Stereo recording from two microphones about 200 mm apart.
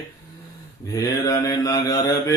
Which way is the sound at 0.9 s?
15° left (ahead or behind).